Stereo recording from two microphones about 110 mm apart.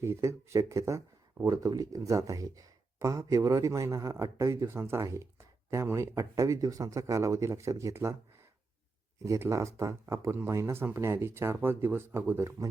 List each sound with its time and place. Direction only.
0.0 s speech: 25° right (ahead or behind)
9.2 s speech: 30° right (ahead or behind)